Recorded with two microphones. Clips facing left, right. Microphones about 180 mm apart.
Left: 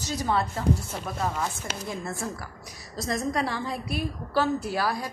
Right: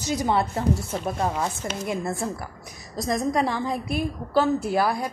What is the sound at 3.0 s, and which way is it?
Speech, 15° right (ahead or behind).